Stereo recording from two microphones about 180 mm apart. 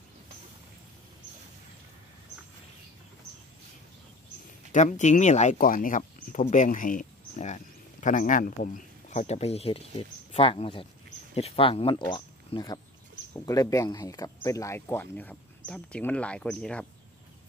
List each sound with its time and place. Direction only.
4.7 s speech: 40° left (ahead or behind); by 16.8 s 5° left (ahead or behind)